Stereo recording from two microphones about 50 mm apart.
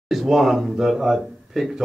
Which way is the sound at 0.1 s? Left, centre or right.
Centre.